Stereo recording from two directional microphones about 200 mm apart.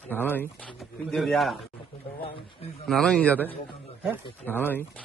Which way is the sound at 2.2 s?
30° left (ahead or behind).